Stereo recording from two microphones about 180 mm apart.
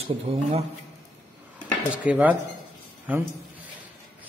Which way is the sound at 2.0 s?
5° right (ahead or behind).